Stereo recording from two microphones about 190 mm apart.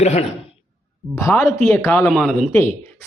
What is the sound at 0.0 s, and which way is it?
Speech, 35° left (ahead or behind).